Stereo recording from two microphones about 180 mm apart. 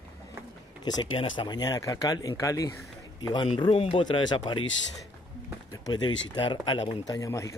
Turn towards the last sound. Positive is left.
turn(degrees=15)  # may be behind; listen again after turning